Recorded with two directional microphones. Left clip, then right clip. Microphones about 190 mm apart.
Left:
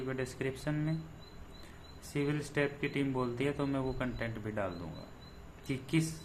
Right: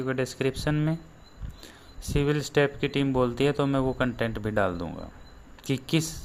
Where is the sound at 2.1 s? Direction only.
55° right (ahead or behind).